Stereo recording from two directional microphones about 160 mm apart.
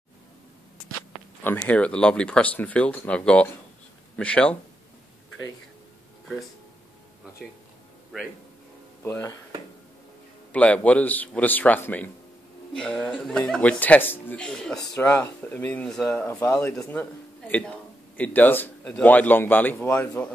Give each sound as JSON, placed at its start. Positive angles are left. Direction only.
{"t": 1.4, "sound": "a man's voice", "side_deg": 10}
{"t": 7.4, "sound": "speech", "side_deg": 0}
{"t": 9.0, "sound": "speech", "side_deg": 20}
{"t": 10.5, "sound": "a man's voice", "side_deg": 10}
{"t": 15.0, "sound": "a man's voice", "side_deg": 15}